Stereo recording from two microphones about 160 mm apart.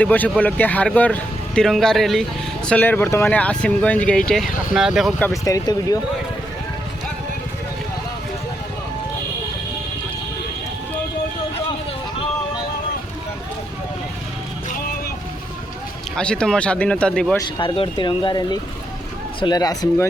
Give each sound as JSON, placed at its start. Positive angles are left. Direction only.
{"t": 0.0, "sound": "speech", "side_deg": 10}
{"t": 4.7, "sound": "speech", "side_deg": -5}
{"t": 5.2, "sound": "speech", "side_deg": 20}
{"t": 16.1, "sound": "speech", "side_deg": 5}
{"t": 17.4, "sound": "speech", "side_deg": 30}